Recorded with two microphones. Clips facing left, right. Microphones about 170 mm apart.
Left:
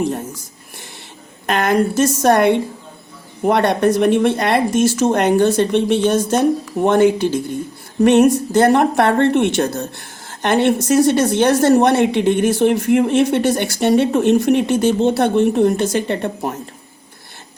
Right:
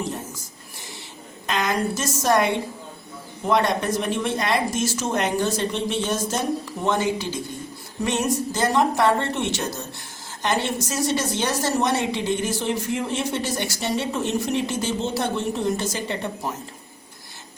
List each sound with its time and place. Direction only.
1.5 s a woman's voice: 60° left (ahead or behind)